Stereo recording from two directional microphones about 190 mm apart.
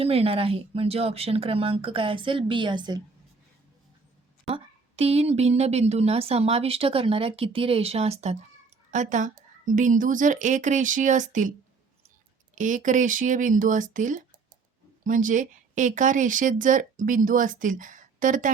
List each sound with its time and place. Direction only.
0.0 s speech: 30° right (ahead or behind)
4.4 s speech: 30° right (ahead or behind)
12.5 s speech: 40° right (ahead or behind)